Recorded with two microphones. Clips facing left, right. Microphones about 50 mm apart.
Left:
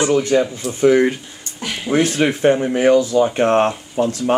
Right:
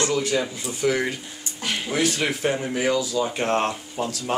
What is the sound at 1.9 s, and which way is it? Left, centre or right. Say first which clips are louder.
Speech: left 8 dB; left.